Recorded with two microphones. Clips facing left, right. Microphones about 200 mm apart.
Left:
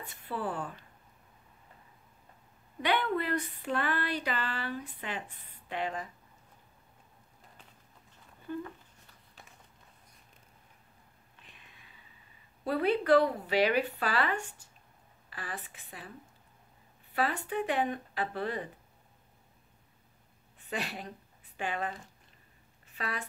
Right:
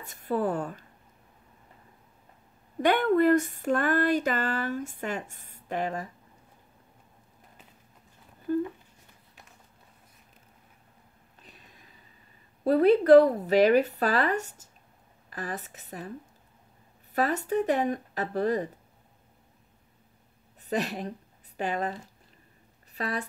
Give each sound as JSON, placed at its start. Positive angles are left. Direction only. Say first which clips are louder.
{"t": 0.0, "sound": "speech", "louder": "right 8 dB", "side_deg": -40}
{"t": 2.8, "sound": "speech", "louder": "right 8 dB", "side_deg": -45}
{"t": 8.5, "sound": "speech", "louder": "right 10 dB", "side_deg": -40}
{"t": 11.3, "sound": "a sound", "louder": "right 5 dB", "side_deg": -40}
{"t": 12.6, "sound": "speech", "louder": "right 8 dB", "side_deg": -40}
{"t": 17.1, "sound": "speech", "louder": "right 6 dB", "side_deg": -40}
{"t": 20.6, "sound": "a woman's voice", "louder": "right 8 dB", "side_deg": -40}